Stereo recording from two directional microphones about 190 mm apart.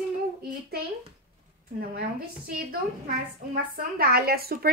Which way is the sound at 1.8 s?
50° right (ahead or behind).